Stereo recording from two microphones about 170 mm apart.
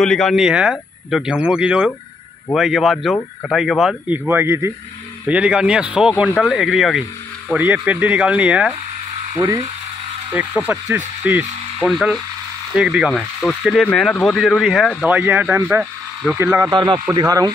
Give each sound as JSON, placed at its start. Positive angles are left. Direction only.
{"t": 0.0, "sound": "speech", "side_deg": 5}
{"t": 9.3, "sound": "speech", "side_deg": -20}
{"t": 10.3, "sound": "speech", "side_deg": -10}